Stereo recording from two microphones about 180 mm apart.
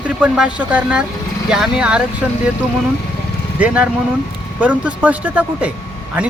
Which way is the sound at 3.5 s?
5° right (ahead or behind).